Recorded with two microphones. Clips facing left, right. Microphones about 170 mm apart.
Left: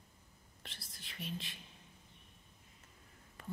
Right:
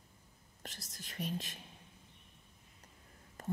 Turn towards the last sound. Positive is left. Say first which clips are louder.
# right 7 dB
turn(degrees=-40)  # may be behind; listen again after turning